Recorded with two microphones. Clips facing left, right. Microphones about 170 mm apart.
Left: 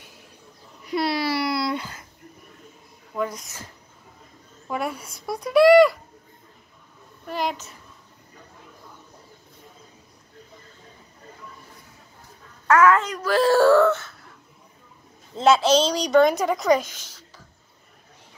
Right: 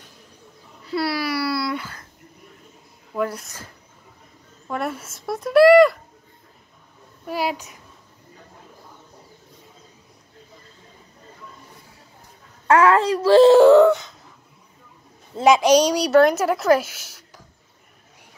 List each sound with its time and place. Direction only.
0.8 s babbling: 20° left (ahead or behind)
3.2 s a woman's voice: 5° right (ahead or behind)
4.6 s speech: centre (ahead or behind)
7.2 s a woman's voice: 10° right (ahead or behind)
12.6 s speech: 30° right (ahead or behind)
15.3 s a woman's voice: 15° right (ahead or behind)